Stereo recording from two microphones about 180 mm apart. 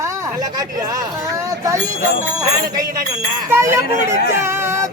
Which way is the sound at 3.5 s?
15° right (ahead or behind).